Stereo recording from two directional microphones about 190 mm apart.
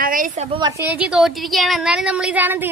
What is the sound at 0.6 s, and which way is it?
Speech, 15° right (ahead or behind).